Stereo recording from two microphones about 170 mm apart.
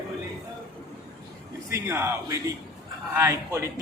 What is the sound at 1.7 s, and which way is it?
A man's voice, 15° right (ahead or behind).